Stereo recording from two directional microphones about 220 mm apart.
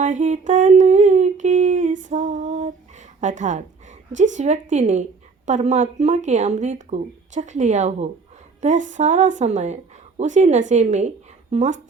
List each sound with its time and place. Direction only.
0.0 s humming: 35° right (ahead or behind)
3.2 s a woman's voice: 35° right (ahead or behind)